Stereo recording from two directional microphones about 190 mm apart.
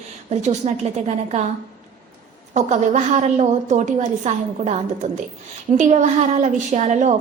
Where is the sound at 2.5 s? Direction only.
35° right (ahead or behind).